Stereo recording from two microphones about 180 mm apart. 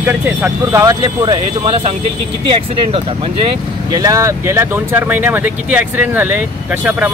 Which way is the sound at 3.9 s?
20° right (ahead or behind).